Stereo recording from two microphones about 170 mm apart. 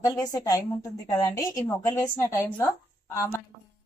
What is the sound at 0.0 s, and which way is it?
A woman's voice, 20° left (ahead or behind).